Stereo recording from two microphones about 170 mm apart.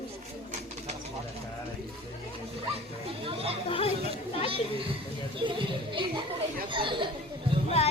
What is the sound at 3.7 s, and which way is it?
Speech, 35° left (ahead or behind).